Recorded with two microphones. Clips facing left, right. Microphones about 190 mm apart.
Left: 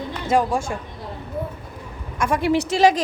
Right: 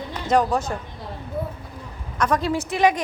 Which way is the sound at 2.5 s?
75° left (ahead or behind).